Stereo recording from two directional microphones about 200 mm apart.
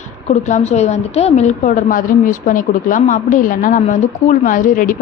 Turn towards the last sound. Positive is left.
turn(degrees=40)  # may be behind; listen again after turning